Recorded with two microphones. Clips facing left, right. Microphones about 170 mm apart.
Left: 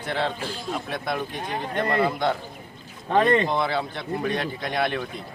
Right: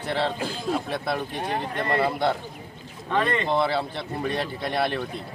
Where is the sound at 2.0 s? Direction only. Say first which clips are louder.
Right 1 dB; centre (ahead or behind).